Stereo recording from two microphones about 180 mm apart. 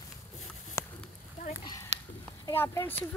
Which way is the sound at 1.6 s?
20° left (ahead or behind).